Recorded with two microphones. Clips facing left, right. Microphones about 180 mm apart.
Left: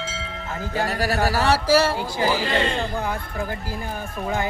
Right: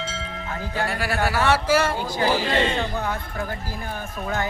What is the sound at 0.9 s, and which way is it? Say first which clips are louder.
Speech: left 3 dB; 40° left (ahead or behind).